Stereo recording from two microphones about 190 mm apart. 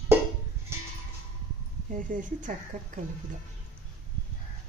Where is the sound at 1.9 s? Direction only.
45° right (ahead or behind).